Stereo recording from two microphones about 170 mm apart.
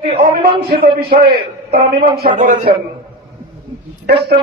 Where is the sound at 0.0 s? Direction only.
35° right (ahead or behind).